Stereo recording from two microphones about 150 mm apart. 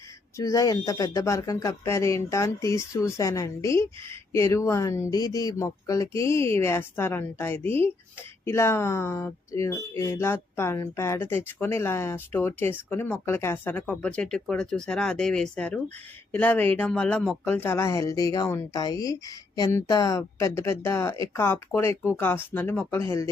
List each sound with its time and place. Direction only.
0.3 s speech: 25° left (ahead or behind)